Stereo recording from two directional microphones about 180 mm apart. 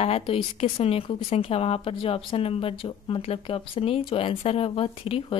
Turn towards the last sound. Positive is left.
turn(degrees=30)  # may be behind; listen again after turning